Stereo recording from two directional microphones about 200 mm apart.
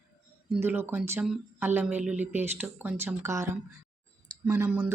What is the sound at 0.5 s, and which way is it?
Speech, 10° right (ahead or behind).